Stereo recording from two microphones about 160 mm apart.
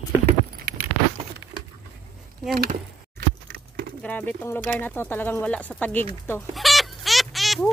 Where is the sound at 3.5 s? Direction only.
75° right (ahead or behind).